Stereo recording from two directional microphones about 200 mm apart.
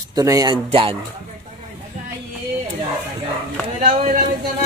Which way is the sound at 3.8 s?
40° right (ahead or behind).